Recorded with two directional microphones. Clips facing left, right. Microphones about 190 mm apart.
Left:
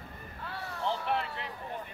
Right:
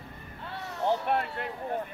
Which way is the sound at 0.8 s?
45° right (ahead or behind).